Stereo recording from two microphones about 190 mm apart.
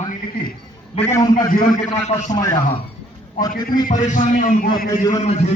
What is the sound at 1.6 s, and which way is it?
Speech, 45° left (ahead or behind).